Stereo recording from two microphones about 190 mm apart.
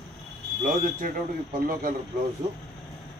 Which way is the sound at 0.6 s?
45° right (ahead or behind).